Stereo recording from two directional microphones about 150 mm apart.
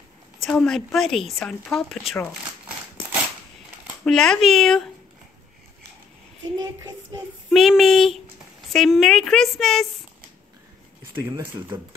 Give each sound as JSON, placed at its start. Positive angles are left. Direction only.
{"t": 0.4, "sound": "speech", "side_deg": 0}
{"t": 4.0, "sound": "speech", "side_deg": 5}
{"t": 6.6, "sound": "child singing", "side_deg": -25}
{"t": 7.4, "sound": "speech", "side_deg": 0}